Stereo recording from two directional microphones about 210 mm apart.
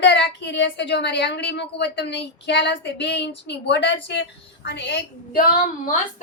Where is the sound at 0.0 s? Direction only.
55° left (ahead or behind).